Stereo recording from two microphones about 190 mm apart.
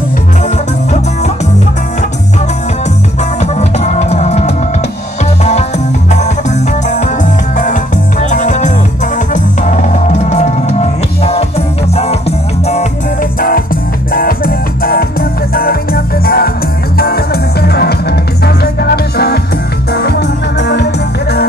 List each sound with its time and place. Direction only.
3.5 s music: 35° left (ahead or behind)
6.9 s music: 40° left (ahead or behind)
14.1 s music: 50° left (ahead or behind)